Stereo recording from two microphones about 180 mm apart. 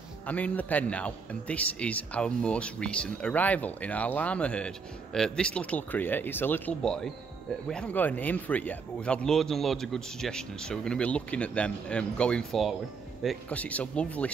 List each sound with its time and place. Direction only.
0.3 s a man's voice: 10° left (ahead or behind)